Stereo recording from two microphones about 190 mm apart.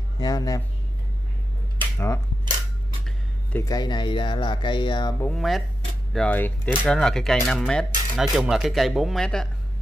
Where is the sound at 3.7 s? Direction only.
20° left (ahead or behind).